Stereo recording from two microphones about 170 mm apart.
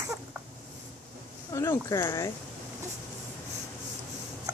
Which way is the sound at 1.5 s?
20° left (ahead or behind).